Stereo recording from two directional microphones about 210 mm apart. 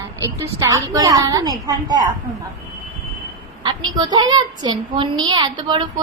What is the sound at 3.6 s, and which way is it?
A child's voice, 20° right (ahead or behind).